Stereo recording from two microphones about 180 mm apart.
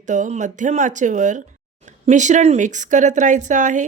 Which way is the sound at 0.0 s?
45° right (ahead or behind).